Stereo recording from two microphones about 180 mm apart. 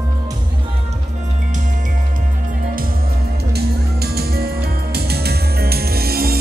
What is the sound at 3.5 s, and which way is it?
Music, 60° right (ahead or behind).